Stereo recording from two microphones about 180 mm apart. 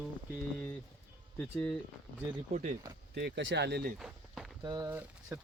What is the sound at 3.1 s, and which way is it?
Speech, 85° right.